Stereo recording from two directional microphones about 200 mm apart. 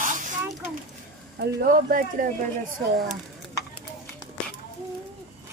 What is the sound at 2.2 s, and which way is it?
Speech, 45° right (ahead or behind).